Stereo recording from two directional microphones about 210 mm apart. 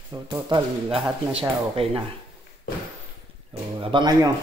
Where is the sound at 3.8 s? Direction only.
20° right (ahead or behind).